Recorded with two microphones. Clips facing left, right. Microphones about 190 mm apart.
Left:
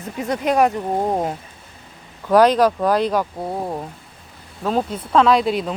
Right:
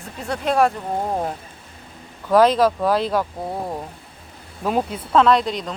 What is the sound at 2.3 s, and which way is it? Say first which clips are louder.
Speech: left 1 dB; centre (ahead or behind).